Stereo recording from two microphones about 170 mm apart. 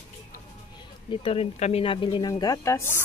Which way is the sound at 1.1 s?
35° left (ahead or behind).